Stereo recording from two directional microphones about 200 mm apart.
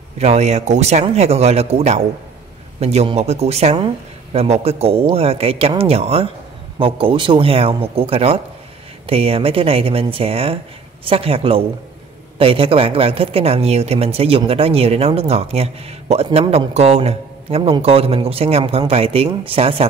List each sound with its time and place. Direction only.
0.2 s speech: 35° right (ahead or behind)